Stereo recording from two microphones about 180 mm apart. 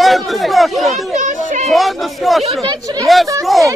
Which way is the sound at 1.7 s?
Centre (ahead or behind).